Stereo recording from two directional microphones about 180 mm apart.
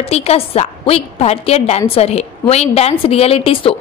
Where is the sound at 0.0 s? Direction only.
35° left (ahead or behind).